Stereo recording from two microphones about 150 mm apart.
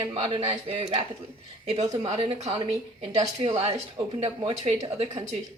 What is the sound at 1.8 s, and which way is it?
Speech, 25° right (ahead or behind).